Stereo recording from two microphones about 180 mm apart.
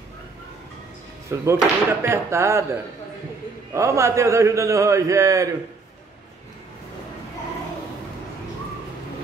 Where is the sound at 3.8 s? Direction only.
15° right (ahead or behind).